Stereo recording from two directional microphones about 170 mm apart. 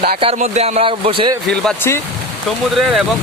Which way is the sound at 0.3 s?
40° right (ahead or behind).